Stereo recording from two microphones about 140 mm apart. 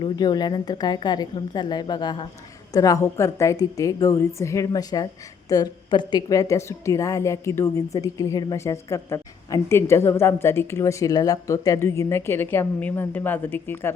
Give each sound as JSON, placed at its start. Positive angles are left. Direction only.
{"t": 0.0, "sound": "a woman's voice", "side_deg": 30}